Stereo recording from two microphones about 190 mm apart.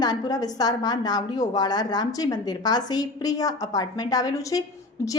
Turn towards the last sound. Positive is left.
turn(degrees=15)  # may be behind; listen again after turning